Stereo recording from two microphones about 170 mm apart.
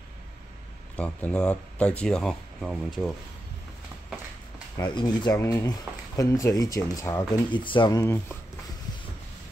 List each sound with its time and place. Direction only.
0.9 s speech: 5° left (ahead or behind)
4.8 s speech: 25° left (ahead or behind)
8.0 s speech: 15° left (ahead or behind)